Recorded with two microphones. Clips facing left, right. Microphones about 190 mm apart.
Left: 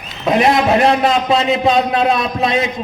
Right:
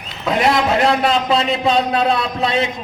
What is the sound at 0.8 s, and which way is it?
A man's voice, 20° left (ahead or behind).